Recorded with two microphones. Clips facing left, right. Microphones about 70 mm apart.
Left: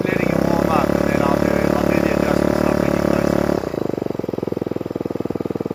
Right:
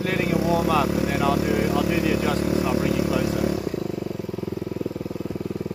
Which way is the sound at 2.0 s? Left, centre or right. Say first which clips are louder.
Left 5 dB; left.